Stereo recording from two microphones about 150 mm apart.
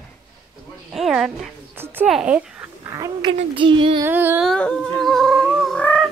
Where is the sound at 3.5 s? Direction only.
35° right (ahead or behind).